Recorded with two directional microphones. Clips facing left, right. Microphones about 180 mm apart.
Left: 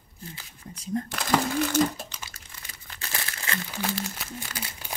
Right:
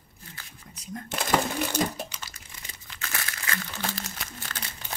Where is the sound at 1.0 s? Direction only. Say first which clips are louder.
Right 2 dB; 20° right (ahead or behind).